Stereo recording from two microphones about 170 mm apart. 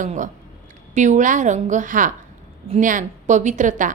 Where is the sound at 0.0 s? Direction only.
45° right (ahead or behind).